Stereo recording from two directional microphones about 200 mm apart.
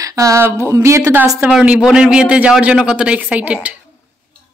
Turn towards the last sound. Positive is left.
turn(degrees=-5)  # may be behind; listen again after turning